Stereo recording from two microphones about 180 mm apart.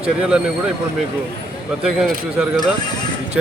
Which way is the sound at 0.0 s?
5° right (ahead or behind).